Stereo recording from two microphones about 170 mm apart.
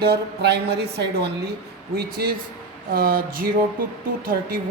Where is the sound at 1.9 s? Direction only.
65° right (ahead or behind).